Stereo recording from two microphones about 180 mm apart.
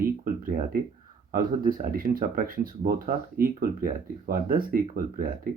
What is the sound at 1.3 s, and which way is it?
Speech, 50° right (ahead or behind).